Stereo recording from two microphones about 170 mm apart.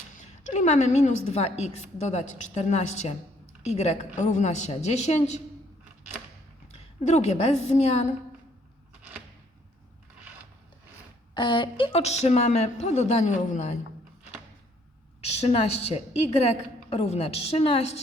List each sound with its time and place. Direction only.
0.5 s a woman's voice: 40° left (ahead or behind)
6.7 s a woman's voice: 40° left (ahead or behind)
11.3 s a woman's voice: 25° left (ahead or behind); by 13.7 s 45° left (ahead or behind)
15.2 s a woman's voice: 40° left (ahead or behind)